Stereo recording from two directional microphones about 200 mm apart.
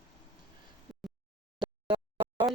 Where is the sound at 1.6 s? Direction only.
20° right (ahead or behind).